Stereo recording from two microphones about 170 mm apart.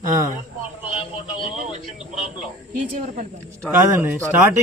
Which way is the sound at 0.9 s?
30° left (ahead or behind).